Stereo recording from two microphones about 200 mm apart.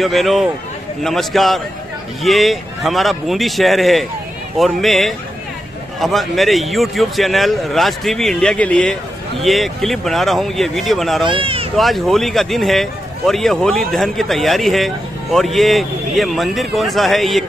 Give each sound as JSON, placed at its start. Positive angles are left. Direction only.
{"t": 0.0, "sound": "speech", "side_deg": 0}
{"t": 11.2, "sound": "speech", "side_deg": -25}
{"t": 11.7, "sound": "speech", "side_deg": 0}